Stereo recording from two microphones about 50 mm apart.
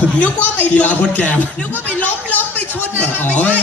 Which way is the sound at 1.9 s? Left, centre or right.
Left.